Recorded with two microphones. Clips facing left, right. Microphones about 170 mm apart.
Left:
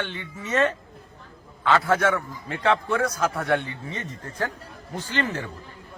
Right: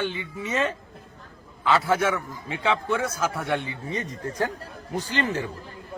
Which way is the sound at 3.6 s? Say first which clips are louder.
Right 2 dB; 40° right (ahead or behind).